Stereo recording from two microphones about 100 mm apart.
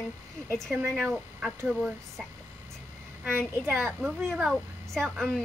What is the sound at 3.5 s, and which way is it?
Speech, 25° right (ahead or behind).